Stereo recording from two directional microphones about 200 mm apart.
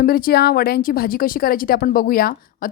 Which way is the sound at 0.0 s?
45° left (ahead or behind).